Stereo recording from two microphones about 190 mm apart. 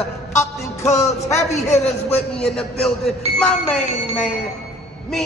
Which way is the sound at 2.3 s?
5° left (ahead or behind).